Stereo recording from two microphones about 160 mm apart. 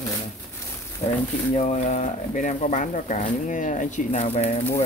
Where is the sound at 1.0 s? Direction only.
40° left (ahead or behind).